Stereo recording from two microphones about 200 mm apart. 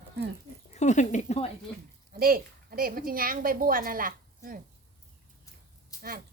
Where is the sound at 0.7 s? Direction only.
35° left (ahead or behind).